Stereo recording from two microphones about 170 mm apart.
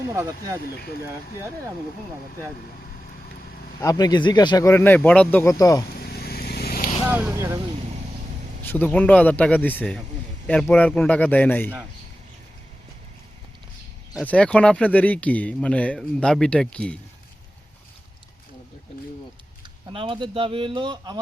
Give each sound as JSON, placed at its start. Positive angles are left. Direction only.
{"t": 0.1, "sound": "speech", "side_deg": -20}
{"t": 0.6, "sound": "speech", "side_deg": 65}
{"t": 1.0, "sound": "speech", "side_deg": -15}
{"t": 3.8, "sound": "speech", "side_deg": 20}
{"t": 6.0, "sound": "vehicle", "side_deg": 65}
{"t": 7.1, "sound": "speech", "side_deg": -10}
{"t": 8.6, "sound": "speech", "side_deg": 10}
{"t": 14.3, "sound": "speech", "side_deg": 5}
{"t": 19.9, "sound": "speech", "side_deg": -30}